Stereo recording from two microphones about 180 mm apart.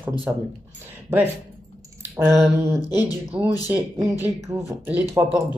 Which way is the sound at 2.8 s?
20° left (ahead or behind).